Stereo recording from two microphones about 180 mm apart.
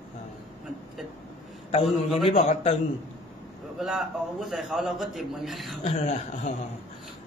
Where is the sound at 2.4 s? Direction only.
40° left (ahead or behind).